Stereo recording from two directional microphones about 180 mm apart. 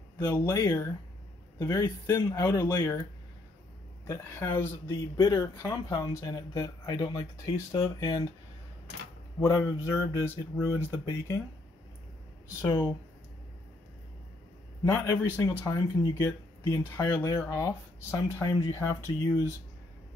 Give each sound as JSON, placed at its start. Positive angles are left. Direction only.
{"t": 0.2, "sound": "speech", "side_deg": 20}
{"t": 4.1, "sound": "speech", "side_deg": 15}
{"t": 9.4, "sound": "speech", "side_deg": 15}
{"t": 14.9, "sound": "speech", "side_deg": 10}